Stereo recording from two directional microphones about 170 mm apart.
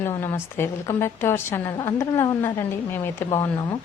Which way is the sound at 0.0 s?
15° left (ahead or behind).